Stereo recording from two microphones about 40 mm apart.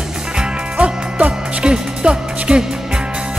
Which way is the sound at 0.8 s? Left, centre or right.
Right.